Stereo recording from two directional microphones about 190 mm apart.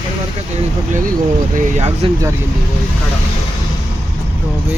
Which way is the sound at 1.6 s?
40° right (ahead or behind).